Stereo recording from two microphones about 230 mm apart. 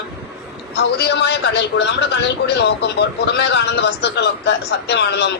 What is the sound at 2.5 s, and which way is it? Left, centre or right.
A man's voice, left.